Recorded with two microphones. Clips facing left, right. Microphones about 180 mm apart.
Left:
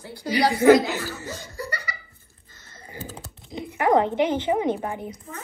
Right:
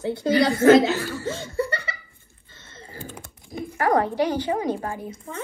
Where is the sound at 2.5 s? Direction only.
25° right (ahead or behind).